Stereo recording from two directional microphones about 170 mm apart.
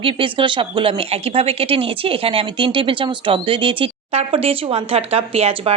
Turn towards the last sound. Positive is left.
turn(degrees=-35)  # may be behind; listen again after turning